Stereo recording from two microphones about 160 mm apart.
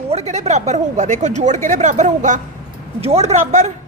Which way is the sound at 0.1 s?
45° right (ahead or behind).